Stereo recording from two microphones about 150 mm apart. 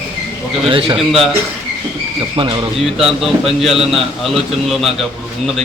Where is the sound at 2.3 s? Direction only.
30° right (ahead or behind).